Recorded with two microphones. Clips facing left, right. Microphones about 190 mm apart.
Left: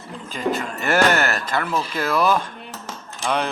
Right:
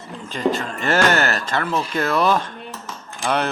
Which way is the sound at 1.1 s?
35° right (ahead or behind).